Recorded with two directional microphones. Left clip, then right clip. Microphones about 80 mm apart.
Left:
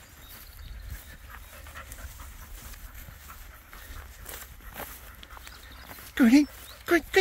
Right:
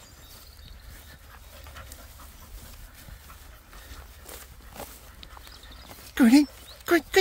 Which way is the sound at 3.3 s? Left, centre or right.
Centre.